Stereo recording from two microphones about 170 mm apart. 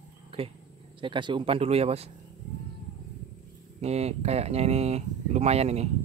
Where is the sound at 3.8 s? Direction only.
40° right (ahead or behind).